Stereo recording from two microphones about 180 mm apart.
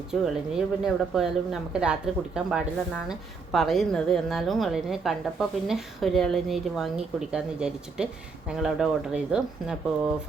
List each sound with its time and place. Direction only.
0.1 s a woman's voice: 5° right (ahead or behind)